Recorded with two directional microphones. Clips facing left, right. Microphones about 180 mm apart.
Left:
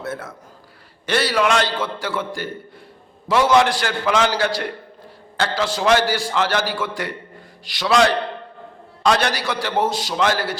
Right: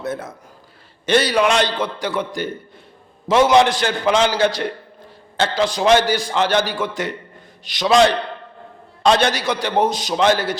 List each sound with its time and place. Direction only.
0.0 s a man's voice: 20° right (ahead or behind)